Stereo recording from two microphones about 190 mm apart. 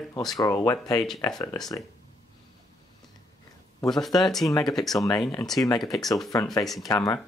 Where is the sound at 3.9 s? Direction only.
Centre (ahead or behind).